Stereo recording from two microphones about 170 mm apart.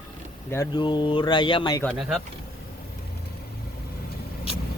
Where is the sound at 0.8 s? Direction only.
25° left (ahead or behind).